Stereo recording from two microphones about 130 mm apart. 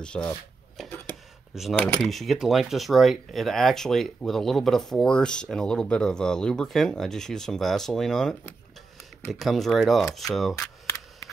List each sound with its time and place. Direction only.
0.0 s speech: 5° left (ahead or behind)
0.7 s a sound: centre (ahead or behind)
1.5 s speech: centre (ahead or behind)